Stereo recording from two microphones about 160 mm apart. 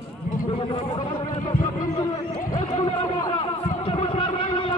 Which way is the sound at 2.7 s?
35° left (ahead or behind).